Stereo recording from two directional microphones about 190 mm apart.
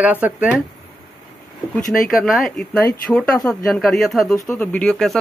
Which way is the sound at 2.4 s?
5° left (ahead or behind).